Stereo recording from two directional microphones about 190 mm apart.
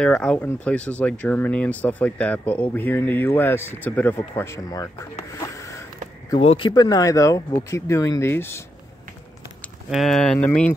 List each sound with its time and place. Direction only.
0.0 s speech: 5° left (ahead or behind)
5.3 s a sound: 15° left (ahead or behind)
6.3 s speech: 30° left (ahead or behind); by 8.6 s 10° left (ahead or behind)
9.8 s speech: centre (ahead or behind)